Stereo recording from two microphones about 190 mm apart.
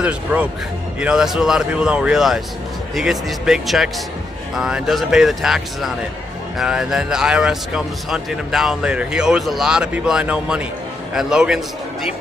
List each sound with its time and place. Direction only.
0.0 s a man's voice: 5° right (ahead or behind)